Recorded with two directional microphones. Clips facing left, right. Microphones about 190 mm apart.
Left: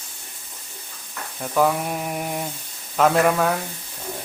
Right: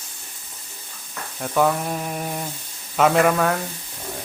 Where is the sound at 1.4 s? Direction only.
Centre (ahead or behind).